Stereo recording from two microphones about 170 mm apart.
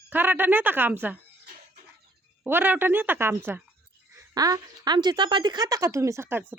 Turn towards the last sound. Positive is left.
turn(degrees=-15)  # may be behind; listen again after turning